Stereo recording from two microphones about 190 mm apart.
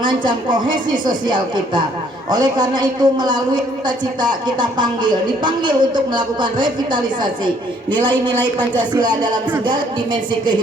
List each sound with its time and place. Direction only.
0.0 s a woman's voice: 25° right (ahead or behind)